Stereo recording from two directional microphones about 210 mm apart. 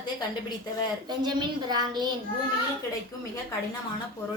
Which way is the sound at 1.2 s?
20° right (ahead or behind).